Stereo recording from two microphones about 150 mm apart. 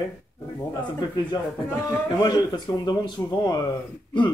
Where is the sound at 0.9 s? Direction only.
30° left (ahead or behind).